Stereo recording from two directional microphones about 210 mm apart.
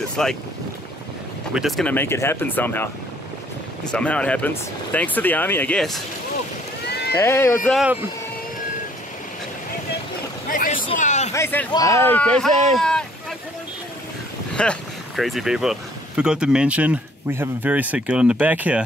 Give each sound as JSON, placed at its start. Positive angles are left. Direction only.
{"t": 0.2, "sound": "speech", "side_deg": 5}
{"t": 1.5, "sound": "speech", "side_deg": 0}
{"t": 3.9, "sound": "speech", "side_deg": 5}
{"t": 6.9, "sound": "horse", "side_deg": 50}
{"t": 7.2, "sound": "speech", "side_deg": 10}
{"t": 7.7, "sound": "speech", "side_deg": -5}
{"t": 10.9, "sound": "speech", "side_deg": 35}
{"t": 11.3, "sound": "speech", "side_deg": 10}
{"t": 12.7, "sound": "boat", "side_deg": 5}
{"t": 14.5, "sound": "speech", "side_deg": 5}